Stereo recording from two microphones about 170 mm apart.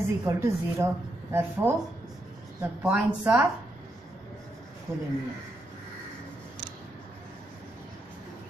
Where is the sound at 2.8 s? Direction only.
10° right (ahead or behind).